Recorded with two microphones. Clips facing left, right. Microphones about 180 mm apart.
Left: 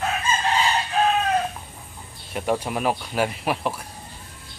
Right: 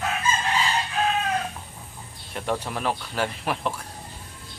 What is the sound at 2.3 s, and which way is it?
Speech, 10° left (ahead or behind).